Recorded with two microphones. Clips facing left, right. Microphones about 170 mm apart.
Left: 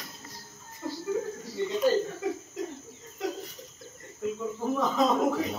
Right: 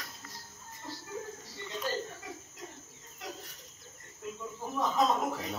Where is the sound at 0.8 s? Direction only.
80° left.